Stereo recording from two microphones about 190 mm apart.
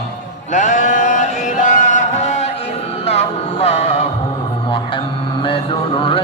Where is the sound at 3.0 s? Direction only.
35° left (ahead or behind).